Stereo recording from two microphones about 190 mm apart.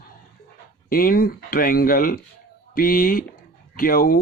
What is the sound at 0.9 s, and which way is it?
Speech, 50° left (ahead or behind).